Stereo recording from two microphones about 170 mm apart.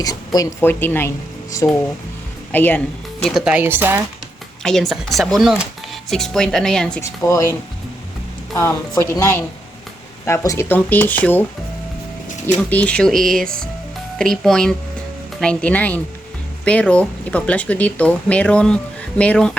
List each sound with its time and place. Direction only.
0.0 s speech: 20° left (ahead or behind)
3.2 s speech: 5° right (ahead or behind)
4.6 s speech: centre (ahead or behind)
7.0 s speech: 15° left (ahead or behind)
8.5 s speech: 15° left (ahead or behind)
12.5 s speech: 10° left (ahead or behind)